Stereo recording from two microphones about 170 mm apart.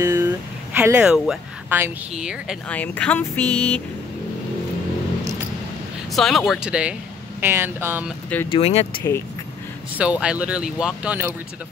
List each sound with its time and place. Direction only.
0.0 s a sound: 15° right (ahead or behind)
0.7 s a woman's voice: 10° right (ahead or behind)
2.7 s speech: 10° left (ahead or behind)
6.1 s speech: centre (ahead or behind)
8.5 s speech: 35° left (ahead or behind)
9.9 s speech: 5° right (ahead or behind)